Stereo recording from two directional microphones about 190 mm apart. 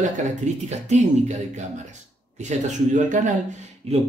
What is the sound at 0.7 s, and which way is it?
Speech, 35° right (ahead or behind).